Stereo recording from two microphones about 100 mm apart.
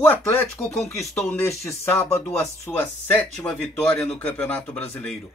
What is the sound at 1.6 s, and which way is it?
Speech, 25° left (ahead or behind).